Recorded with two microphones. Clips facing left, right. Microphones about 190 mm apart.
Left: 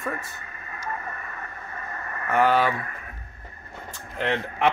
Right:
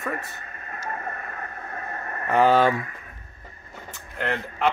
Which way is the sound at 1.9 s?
40° right (ahead or behind).